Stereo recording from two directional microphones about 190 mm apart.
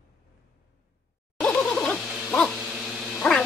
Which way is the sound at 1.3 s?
5° left (ahead or behind).